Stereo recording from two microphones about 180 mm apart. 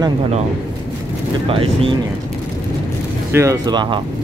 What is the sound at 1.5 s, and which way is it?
Speech, 30° right (ahead or behind).